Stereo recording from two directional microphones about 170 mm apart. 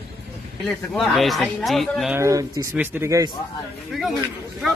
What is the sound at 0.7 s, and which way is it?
Speech, centre (ahead or behind).